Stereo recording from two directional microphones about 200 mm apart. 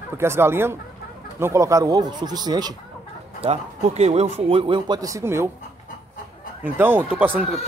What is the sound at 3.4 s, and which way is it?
Speech, 30° right (ahead or behind).